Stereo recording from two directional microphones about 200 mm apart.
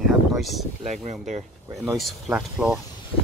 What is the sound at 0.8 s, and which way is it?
Speech, 35° right (ahead or behind).